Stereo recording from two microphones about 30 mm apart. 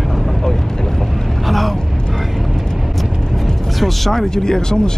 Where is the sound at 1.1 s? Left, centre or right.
Centre.